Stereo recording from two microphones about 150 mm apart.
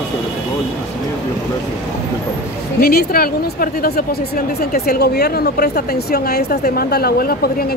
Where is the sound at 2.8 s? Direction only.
85° left.